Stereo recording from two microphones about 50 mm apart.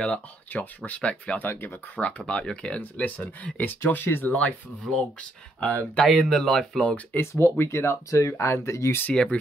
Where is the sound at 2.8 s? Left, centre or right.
Left.